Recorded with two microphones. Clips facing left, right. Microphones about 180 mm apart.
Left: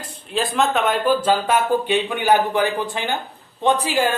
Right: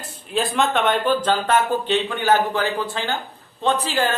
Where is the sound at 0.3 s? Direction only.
Centre (ahead or behind).